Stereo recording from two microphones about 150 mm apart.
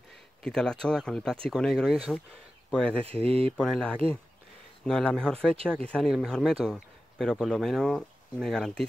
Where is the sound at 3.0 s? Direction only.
40° right (ahead or behind).